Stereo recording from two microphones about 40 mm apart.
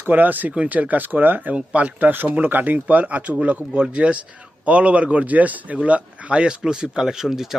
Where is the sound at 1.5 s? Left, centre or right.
Right.